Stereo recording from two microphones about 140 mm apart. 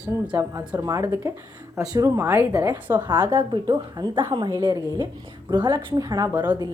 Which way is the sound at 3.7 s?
35° right (ahead or behind).